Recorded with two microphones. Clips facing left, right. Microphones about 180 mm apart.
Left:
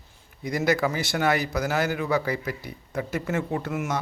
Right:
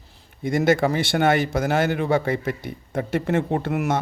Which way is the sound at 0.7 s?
30° right (ahead or behind).